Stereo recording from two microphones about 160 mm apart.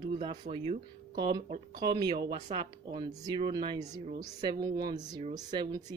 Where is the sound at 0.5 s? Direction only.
35° right (ahead or behind).